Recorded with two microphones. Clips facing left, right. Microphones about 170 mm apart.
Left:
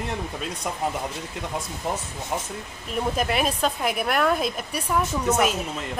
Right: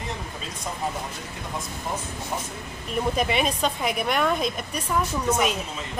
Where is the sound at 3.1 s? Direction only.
Centre (ahead or behind).